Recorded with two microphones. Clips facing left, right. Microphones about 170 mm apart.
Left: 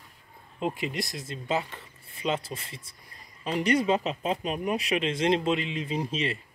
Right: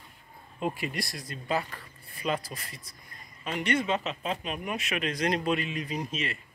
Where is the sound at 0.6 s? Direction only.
20° left (ahead or behind).